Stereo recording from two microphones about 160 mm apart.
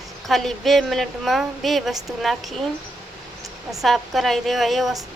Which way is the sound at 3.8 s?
Centre (ahead or behind).